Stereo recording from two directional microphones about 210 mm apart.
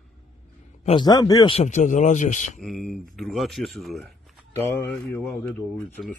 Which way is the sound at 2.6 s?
Centre (ahead or behind).